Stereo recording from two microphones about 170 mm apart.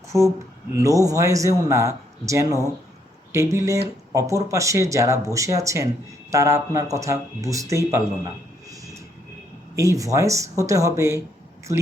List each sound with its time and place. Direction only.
0.1 s speech: 15° right (ahead or behind)
9.7 s speech: 20° right (ahead or behind)